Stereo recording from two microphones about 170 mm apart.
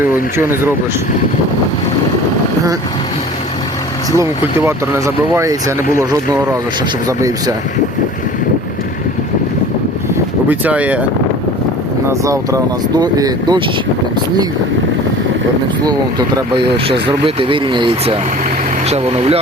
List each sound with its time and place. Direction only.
0.3 s speech: 15° right (ahead or behind)
4.2 s speech: 15° right (ahead or behind)
10.5 s speech: 10° right (ahead or behind)
12.0 s speech: 20° right (ahead or behind)
15.8 s speech: 25° right (ahead or behind)